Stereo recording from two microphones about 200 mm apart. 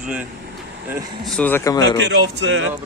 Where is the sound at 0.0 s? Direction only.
5° right (ahead or behind).